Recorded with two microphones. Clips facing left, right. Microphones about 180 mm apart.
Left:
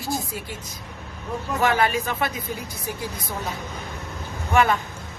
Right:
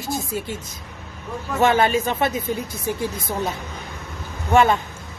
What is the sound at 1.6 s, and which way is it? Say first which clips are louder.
A man's voice: right 4 dB; 25° right (ahead or behind).